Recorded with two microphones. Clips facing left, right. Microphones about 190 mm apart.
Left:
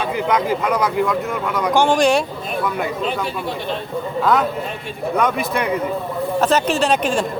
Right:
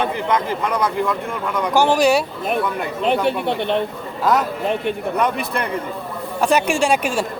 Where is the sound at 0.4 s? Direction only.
10° left (ahead or behind).